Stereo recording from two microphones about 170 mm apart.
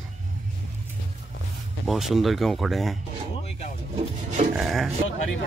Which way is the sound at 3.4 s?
40° left (ahead or behind).